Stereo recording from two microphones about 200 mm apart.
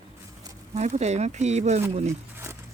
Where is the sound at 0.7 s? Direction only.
35° right (ahead or behind).